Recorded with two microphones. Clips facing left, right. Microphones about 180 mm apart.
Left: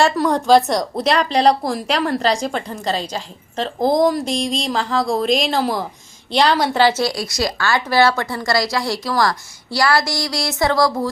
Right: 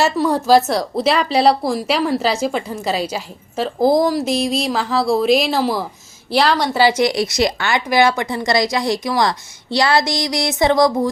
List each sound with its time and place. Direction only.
0.0 s speech: 5° right (ahead or behind)
6.7 s a woman's voice: 10° right (ahead or behind)